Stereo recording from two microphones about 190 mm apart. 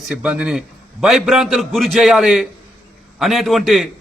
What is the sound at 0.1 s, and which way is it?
A man's voice, 5° right (ahead or behind).